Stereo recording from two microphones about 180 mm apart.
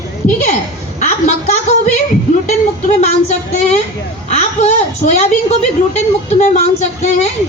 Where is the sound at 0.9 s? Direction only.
40° left (ahead or behind).